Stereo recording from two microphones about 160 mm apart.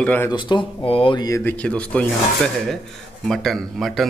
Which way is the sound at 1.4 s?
10° left (ahead or behind).